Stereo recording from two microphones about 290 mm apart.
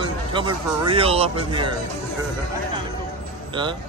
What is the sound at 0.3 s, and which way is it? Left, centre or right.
Speech, centre.